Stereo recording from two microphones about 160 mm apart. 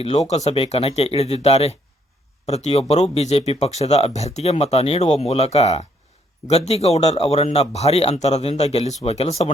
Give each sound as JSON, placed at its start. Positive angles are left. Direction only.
{"t": 0.0, "sound": "speech", "side_deg": 40}